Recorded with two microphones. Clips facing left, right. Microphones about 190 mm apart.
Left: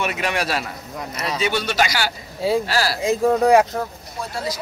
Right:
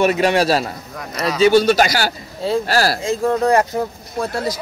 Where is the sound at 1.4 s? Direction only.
35° right (ahead or behind).